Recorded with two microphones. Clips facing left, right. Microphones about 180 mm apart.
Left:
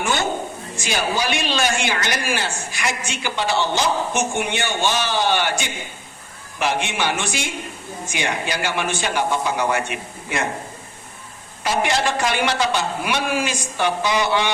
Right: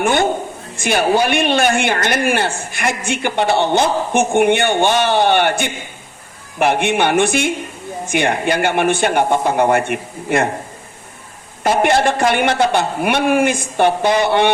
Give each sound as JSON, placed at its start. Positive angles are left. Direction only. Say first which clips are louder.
{"t": 0.0, "sound": "a sound", "louder": "right 7 dB", "side_deg": -55}
{"t": 0.8, "sound": "a woman's voice", "louder": "right 8 dB", "side_deg": -55}
{"t": 11.6, "sound": "a woman's voice", "louder": "right 7 dB", "side_deg": -55}